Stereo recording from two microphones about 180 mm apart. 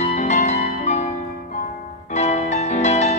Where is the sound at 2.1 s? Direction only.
40° left (ahead or behind).